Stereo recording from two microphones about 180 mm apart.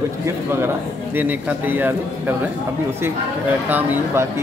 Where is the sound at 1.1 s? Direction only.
10° right (ahead or behind).